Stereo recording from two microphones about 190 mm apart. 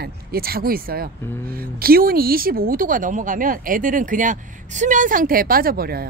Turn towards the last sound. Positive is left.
turn(degrees=-55)  # may be behind; listen again after turning